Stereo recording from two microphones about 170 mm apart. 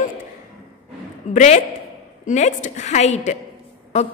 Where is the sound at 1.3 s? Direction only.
45° left (ahead or behind).